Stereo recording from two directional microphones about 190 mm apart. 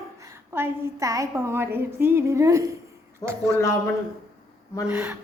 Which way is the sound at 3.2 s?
15° left (ahead or behind).